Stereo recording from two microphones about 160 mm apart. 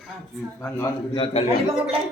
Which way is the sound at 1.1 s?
35° left (ahead or behind).